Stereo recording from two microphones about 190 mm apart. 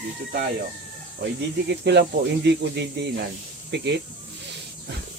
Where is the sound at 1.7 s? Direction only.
60° right (ahead or behind).